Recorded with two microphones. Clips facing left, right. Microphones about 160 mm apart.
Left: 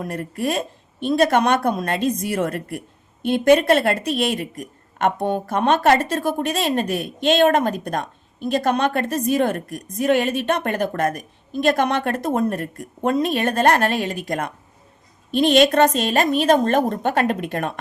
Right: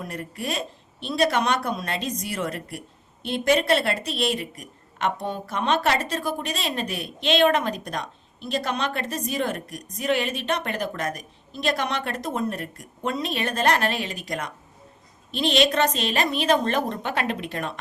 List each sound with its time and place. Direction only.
0.0 s a woman's voice: 50° left (ahead or behind)